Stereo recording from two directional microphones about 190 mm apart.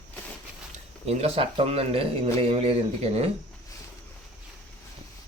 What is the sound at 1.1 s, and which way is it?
Speech, 35° right (ahead or behind).